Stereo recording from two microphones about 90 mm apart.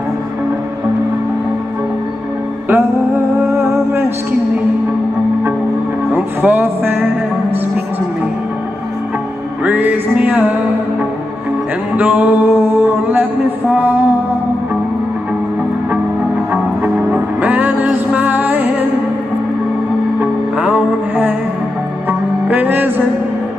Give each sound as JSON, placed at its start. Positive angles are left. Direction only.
{"t": 2.7, "sound": "music", "side_deg": -30}
{"t": 6.1, "sound": "music", "side_deg": -20}
{"t": 9.7, "sound": "music", "side_deg": -20}
{"t": 12.0, "sound": "music", "side_deg": -20}
{"t": 16.8, "sound": "music", "side_deg": -20}
{"t": 20.2, "sound": "music", "side_deg": -15}
{"t": 22.5, "sound": "music", "side_deg": -20}